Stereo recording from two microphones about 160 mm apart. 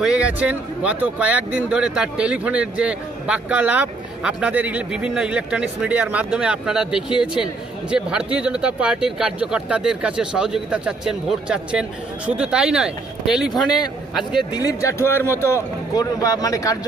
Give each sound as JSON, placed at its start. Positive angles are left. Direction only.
{"t": 0.0, "sound": "speech", "side_deg": -5}
{"t": 14.7, "sound": "a man's voice", "side_deg": 20}